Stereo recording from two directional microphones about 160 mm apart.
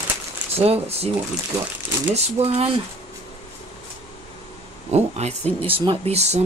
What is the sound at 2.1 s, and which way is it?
Speech, 40° right (ahead or behind).